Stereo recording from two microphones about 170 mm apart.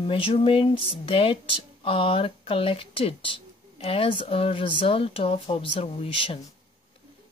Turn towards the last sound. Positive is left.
turn(degrees=30)  # may be behind; listen again after turning